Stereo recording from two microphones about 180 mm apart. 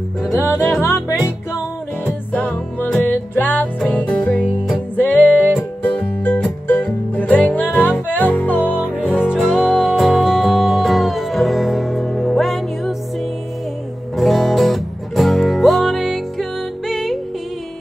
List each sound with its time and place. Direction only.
0.3 s music: 15° left (ahead or behind)
9.1 s music: 5° right (ahead or behind)
14.1 s music: centre (ahead or behind)